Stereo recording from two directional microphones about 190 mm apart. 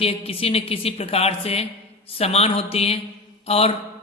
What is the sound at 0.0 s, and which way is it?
A man's voice, 30° left (ahead or behind).